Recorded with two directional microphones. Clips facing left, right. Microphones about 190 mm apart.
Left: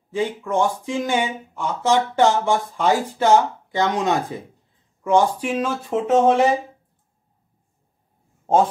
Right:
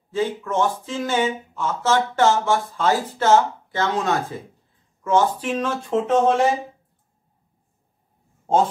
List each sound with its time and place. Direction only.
0.1 s speech: 15° left (ahead or behind)